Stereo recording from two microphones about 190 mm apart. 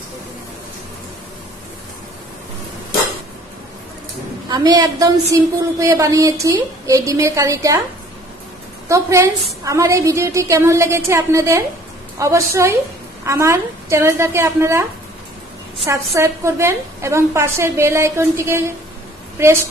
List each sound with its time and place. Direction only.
4.5 s a woman's voice: 20° right (ahead or behind)
8.8 s a woman's voice: 15° right (ahead or behind)
15.9 s a woman's voice: 15° right (ahead or behind)